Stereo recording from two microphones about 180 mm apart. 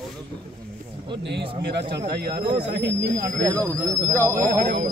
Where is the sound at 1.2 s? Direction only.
70° right (ahead or behind).